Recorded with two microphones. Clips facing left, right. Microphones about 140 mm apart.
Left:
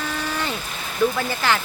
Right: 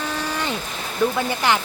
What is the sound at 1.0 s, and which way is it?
Speech, 5° left (ahead or behind).